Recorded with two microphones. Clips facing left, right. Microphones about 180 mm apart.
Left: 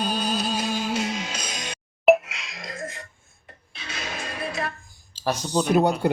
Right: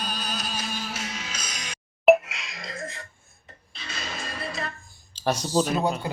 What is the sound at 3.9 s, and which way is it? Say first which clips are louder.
Music: left 2 dB; 15° left (ahead or behind).